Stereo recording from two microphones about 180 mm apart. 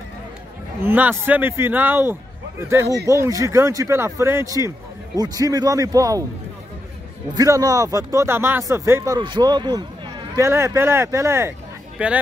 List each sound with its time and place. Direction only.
0.8 s a man's voice: 10° right (ahead or behind)
7.3 s a man's voice: 20° right (ahead or behind)